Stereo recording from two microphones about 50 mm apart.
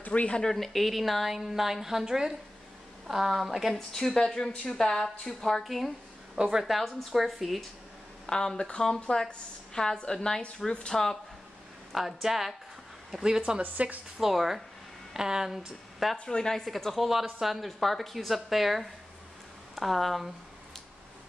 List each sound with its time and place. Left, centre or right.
0.0 s speech: left
0.4 s a woman's voice: centre
6.3 s speech: centre
6.6 s speech: centre
8.3 s a woman's voice: centre
11.9 s speech: centre
13.6 s a woman's voice: right
14.1 s speech: centre
16.3 s a woman's voice: centre